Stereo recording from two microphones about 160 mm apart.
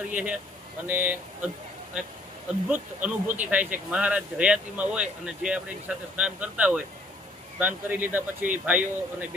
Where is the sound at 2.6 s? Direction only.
10° right (ahead or behind).